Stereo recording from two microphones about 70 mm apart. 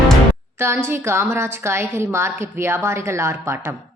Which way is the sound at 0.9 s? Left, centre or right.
Right.